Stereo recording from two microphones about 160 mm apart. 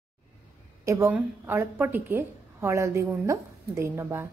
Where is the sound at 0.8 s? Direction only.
20° right (ahead or behind).